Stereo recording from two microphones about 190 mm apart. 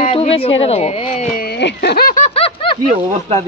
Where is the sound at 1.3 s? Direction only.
55° left (ahead or behind).